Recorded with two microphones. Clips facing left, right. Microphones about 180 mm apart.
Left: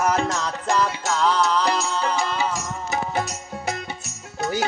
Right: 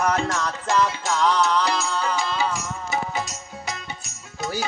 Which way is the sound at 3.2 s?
60° left (ahead or behind).